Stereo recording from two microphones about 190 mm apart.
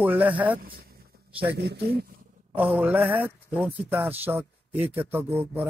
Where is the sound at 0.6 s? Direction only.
50° right (ahead or behind).